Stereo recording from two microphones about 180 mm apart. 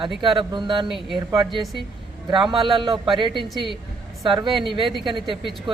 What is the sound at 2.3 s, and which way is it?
Speech, 25° right (ahead or behind).